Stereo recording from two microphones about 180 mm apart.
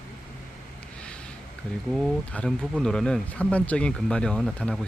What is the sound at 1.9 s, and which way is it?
Speech, 5° right (ahead or behind).